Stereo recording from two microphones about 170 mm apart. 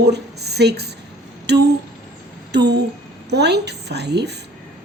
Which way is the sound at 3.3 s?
80° right.